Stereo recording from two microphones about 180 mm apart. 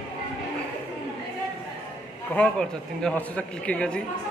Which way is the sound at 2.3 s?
5° left (ahead or behind).